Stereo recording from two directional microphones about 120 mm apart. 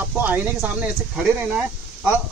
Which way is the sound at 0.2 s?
15° right (ahead or behind).